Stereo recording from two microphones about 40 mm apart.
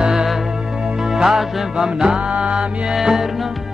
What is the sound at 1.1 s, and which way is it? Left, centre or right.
Music, centre.